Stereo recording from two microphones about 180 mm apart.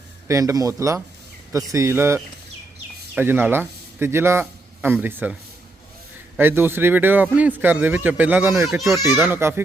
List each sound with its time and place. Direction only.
0.3 s a man's voice: 20° right (ahead or behind)